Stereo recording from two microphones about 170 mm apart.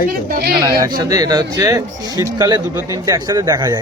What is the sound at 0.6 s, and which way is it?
Speech, 20° right (ahead or behind).